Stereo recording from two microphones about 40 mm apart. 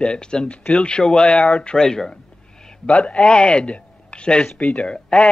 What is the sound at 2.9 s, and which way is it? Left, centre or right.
Speech, left.